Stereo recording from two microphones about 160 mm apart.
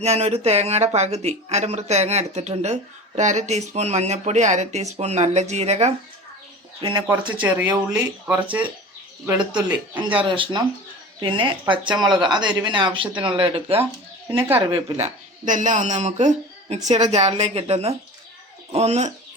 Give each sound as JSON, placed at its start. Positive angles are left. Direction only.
{"t": 0.0, "sound": "a woman's voice", "side_deg": -40}
{"t": 7.4, "sound": "speech", "side_deg": -10}
{"t": 10.2, "sound": "speech", "side_deg": -30}
{"t": 15.0, "sound": "a woman's voice", "side_deg": -50}